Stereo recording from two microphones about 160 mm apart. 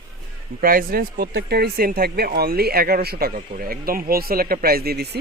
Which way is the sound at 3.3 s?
60° right (ahead or behind).